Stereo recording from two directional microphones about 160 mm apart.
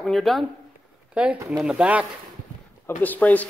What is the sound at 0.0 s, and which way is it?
Speech, centre (ahead or behind).